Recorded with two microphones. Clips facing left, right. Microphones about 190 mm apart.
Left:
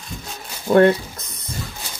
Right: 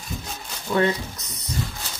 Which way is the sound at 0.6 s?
50° left (ahead or behind).